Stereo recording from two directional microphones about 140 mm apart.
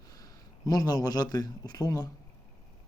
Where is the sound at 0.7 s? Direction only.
30° left (ahead or behind).